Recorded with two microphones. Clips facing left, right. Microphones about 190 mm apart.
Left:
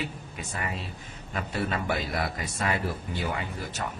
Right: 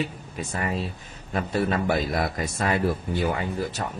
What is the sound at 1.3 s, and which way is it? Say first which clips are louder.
Speech: right 6 dB; 40° right (ahead or behind).